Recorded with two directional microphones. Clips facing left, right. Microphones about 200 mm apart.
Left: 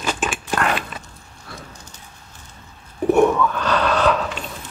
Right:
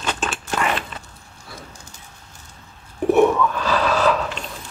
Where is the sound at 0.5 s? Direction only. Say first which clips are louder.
Left 1 dB; centre (ahead or behind).